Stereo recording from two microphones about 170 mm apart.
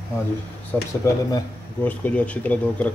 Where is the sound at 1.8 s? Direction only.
10° left (ahead or behind).